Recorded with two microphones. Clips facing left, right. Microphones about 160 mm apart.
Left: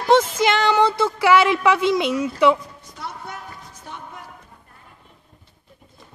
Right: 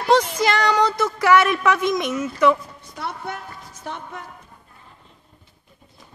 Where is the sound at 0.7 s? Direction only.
25° left (ahead or behind).